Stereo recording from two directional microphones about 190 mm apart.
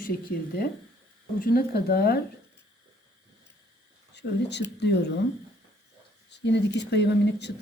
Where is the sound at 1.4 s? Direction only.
50° left (ahead or behind).